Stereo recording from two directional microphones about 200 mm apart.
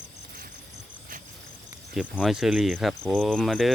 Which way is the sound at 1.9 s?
Centre (ahead or behind).